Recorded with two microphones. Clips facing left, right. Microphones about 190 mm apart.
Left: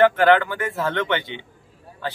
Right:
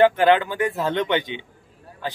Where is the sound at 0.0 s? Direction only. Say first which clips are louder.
Even; 15° right (ahead or behind).